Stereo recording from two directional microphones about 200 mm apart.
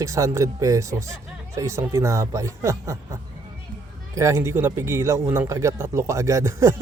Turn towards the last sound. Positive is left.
turn(degrees=-15)  # may be behind; listen again after turning